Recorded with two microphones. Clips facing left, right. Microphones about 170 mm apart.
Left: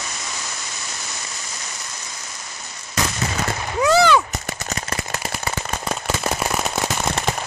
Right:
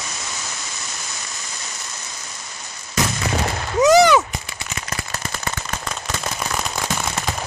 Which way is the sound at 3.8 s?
20° right (ahead or behind).